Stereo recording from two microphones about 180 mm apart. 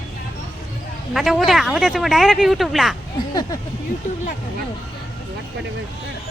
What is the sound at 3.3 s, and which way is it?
Speech, 20° left (ahead or behind).